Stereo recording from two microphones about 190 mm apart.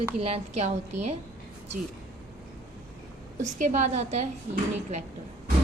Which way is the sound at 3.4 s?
40° right (ahead or behind).